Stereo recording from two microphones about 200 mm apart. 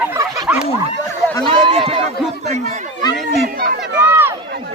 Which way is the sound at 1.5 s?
25° right (ahead or behind).